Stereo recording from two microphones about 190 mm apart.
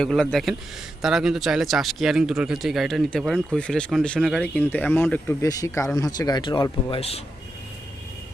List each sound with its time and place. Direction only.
0.0 s speech: centre (ahead or behind); by 7.2 s 30° left (ahead or behind)